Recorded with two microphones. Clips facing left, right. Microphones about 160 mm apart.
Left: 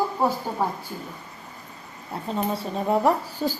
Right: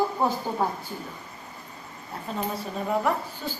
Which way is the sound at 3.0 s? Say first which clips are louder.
Left 5 dB; 35° left (ahead or behind).